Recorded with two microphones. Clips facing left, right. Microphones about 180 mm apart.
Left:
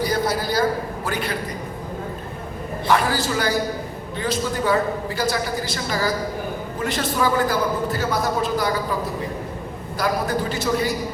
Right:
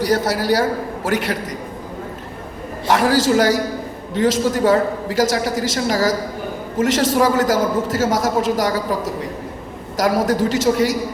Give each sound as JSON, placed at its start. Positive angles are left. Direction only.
{"t": 0.0, "sound": "a man's voice", "side_deg": -75}
{"t": 2.8, "sound": "a man's voice", "side_deg": -90}